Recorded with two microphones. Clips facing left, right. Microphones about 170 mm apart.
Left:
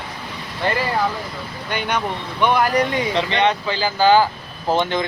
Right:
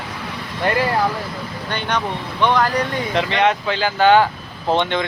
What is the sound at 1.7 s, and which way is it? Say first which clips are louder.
Speech: even; 10° left (ahead or behind).